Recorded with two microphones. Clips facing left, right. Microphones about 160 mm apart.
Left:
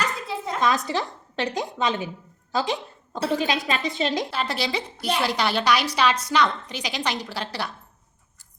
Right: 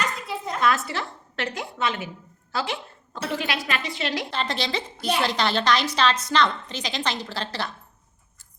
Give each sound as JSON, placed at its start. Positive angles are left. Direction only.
{"t": 0.3, "sound": "a woman's voice", "side_deg": 25}
{"t": 4.3, "sound": "a woman's voice", "side_deg": 10}